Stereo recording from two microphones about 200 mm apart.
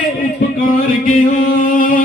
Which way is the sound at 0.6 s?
45° left (ahead or behind).